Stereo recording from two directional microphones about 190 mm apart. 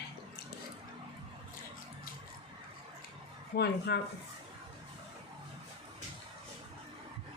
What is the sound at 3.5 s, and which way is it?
Speech, 50° left (ahead or behind).